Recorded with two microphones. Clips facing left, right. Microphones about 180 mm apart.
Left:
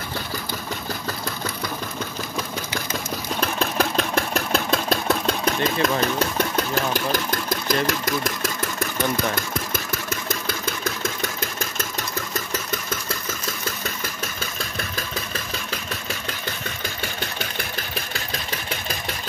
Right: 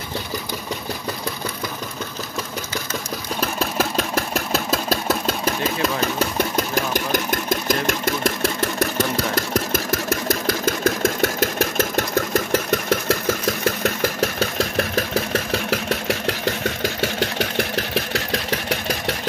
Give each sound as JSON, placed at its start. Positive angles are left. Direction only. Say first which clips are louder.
{"t": 3.3, "sound": "engine", "louder": "right 1 dB", "side_deg": -5}
{"t": 8.9, "sound": "speech", "louder": "right 2 dB", "side_deg": -85}
{"t": 11.1, "sound": "engine", "louder": "right 9 dB", "side_deg": -70}